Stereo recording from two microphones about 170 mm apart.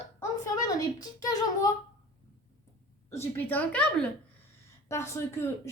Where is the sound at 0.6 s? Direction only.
20° left (ahead or behind).